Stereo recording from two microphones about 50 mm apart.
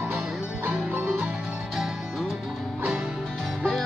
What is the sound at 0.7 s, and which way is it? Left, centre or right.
Music, right.